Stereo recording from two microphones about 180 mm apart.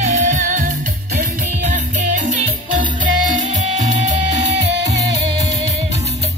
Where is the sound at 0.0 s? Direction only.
45° right (ahead or behind).